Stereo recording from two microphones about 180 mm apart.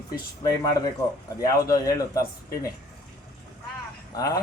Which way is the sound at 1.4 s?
20° left (ahead or behind).